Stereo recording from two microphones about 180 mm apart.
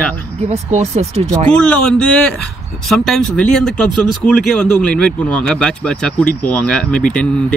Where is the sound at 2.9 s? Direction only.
Centre (ahead or behind).